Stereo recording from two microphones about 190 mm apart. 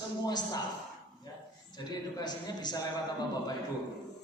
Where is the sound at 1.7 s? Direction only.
20° left (ahead or behind).